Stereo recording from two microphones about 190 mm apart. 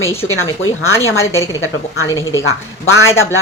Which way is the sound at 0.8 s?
15° left (ahead or behind).